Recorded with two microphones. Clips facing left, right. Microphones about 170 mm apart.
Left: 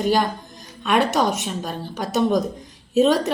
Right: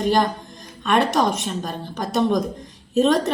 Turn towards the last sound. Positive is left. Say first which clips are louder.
# left 1 dB
turn(degrees=5)  # may be behind; listen again after turning